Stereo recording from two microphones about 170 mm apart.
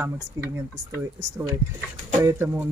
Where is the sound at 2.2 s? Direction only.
10° right (ahead or behind).